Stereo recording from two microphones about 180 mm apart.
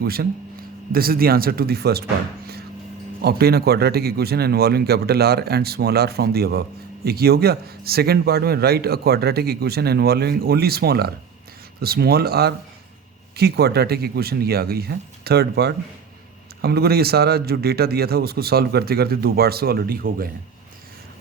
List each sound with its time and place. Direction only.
0.0 s speech: 60° right (ahead or behind)
3.2 s speech: 60° right (ahead or behind)